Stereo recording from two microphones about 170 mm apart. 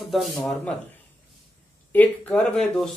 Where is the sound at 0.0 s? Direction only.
Centre (ahead or behind).